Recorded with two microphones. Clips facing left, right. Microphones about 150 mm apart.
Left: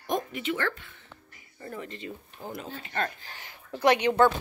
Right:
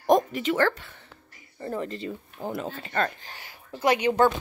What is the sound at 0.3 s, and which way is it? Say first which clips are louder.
Speech: right 6 dB; 40° right (ahead or behind).